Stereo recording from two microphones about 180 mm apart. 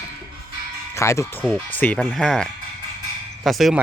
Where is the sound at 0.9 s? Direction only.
15° left (ahead or behind).